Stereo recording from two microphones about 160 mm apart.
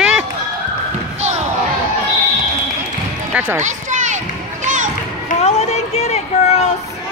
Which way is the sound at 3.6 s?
50° right (ahead or behind).